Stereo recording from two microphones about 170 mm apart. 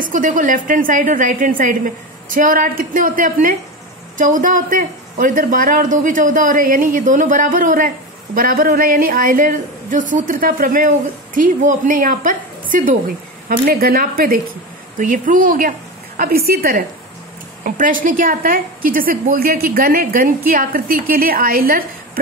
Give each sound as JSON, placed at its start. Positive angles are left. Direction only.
{"t": 0.0, "sound": "a woman's voice", "side_deg": -50}
{"t": 17.6, "sound": "a woman's voice", "side_deg": -50}